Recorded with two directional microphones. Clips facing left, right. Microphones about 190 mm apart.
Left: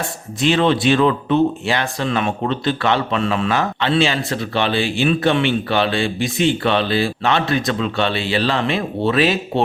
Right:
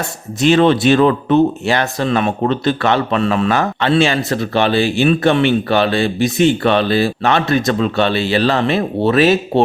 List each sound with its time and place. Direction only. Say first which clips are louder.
0.4 s speech: right 4 dB; 45° right (ahead or behind)